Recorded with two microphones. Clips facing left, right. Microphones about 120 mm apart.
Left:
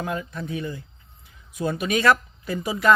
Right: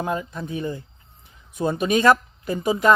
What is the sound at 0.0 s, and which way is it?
Speech, 25° right (ahead or behind).